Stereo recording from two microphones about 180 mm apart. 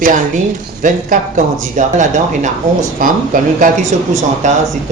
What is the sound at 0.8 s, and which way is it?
Speech, 45° right (ahead or behind).